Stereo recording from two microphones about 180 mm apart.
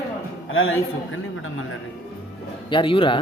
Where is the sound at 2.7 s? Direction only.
30° left (ahead or behind).